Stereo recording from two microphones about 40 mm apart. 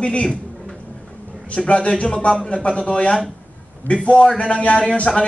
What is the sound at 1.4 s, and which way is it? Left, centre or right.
A man's voice, left.